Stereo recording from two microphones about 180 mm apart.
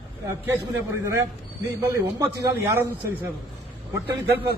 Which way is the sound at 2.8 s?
10° right (ahead or behind).